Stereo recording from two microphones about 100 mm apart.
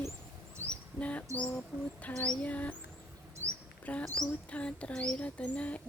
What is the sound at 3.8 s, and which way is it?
Speech, 15° left (ahead or behind).